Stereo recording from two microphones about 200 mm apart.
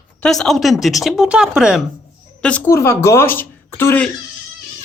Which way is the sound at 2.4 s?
10° left (ahead or behind).